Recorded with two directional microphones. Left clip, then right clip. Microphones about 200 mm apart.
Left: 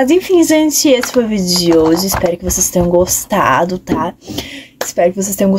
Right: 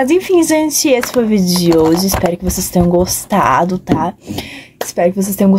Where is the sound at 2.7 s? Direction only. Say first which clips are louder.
Left 1 dB; 5° right (ahead or behind).